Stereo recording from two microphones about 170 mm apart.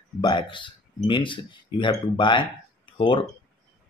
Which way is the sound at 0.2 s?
30° left (ahead or behind).